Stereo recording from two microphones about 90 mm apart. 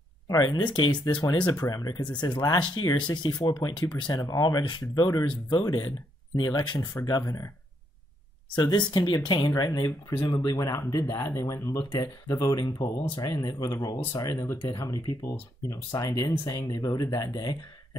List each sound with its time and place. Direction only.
0.3 s speech: 50° left (ahead or behind)
1.0 s speech: 45° left (ahead or behind)
8.7 s speech: 55° left (ahead or behind)
9.6 s speech: 40° left (ahead or behind)
11.2 s speech: 30° left (ahead or behind); by 13.3 s 50° left (ahead or behind)
13.4 s speech: 40° left (ahead or behind)
15.9 s speech: 45° left (ahead or behind)